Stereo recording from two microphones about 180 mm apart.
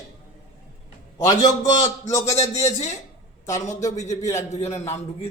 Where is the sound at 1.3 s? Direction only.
20° left (ahead or behind).